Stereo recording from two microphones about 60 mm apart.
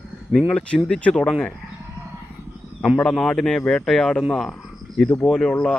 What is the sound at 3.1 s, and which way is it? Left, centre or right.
Speech, centre.